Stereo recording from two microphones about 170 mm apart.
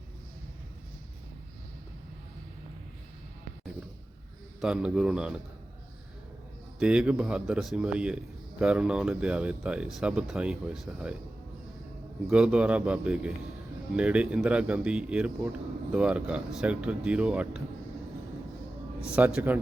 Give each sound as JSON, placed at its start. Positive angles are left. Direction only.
{"t": 4.6, "sound": "speech", "side_deg": -5}
{"t": 6.7, "sound": "speech", "side_deg": -5}
{"t": 12.3, "sound": "speech", "side_deg": -5}
{"t": 19.1, "sound": "speech", "side_deg": -10}